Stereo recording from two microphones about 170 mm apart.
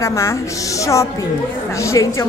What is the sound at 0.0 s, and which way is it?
A woman's voice, 15° left (ahead or behind).